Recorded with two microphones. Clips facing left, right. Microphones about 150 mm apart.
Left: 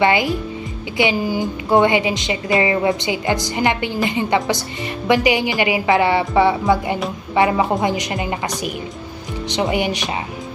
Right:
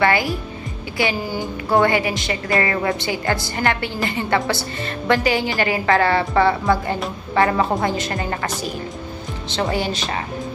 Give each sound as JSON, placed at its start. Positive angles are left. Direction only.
{"t": 0.0, "sound": "a woman's voice", "side_deg": 20}